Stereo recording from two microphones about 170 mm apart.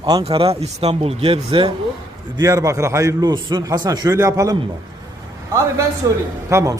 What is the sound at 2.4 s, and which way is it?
A man's voice, 20° right (ahead or behind).